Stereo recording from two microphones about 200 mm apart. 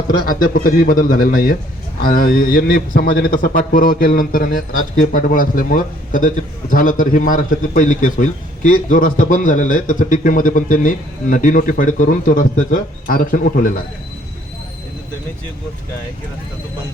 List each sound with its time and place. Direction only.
0.3 s a man's voice: 45° left (ahead or behind)